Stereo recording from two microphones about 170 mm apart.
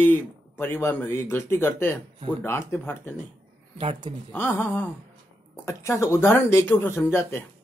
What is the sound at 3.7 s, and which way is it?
Speech, 30° right (ahead or behind).